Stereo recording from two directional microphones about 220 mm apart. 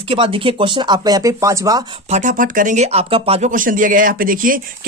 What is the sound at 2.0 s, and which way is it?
Speech, 30° right (ahead or behind).